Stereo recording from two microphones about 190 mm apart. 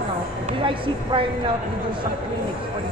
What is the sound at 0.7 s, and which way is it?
Speech, 25° right (ahead or behind).